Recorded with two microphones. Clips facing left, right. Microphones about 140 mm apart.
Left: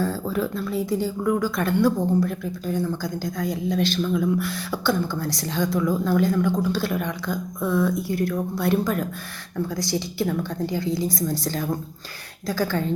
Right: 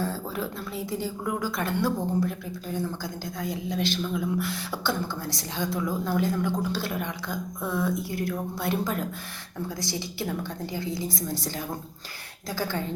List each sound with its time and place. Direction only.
0.0 s a woman's voice: 20° right (ahead or behind)